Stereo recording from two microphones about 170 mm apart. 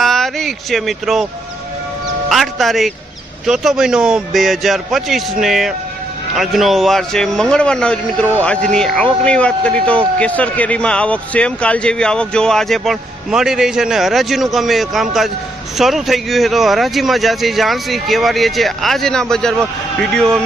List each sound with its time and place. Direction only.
0.0 s speech: centre (ahead or behind)
2.3 s speech: centre (ahead or behind)